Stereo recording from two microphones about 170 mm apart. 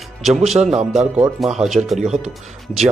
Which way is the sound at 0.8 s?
5° right (ahead or behind).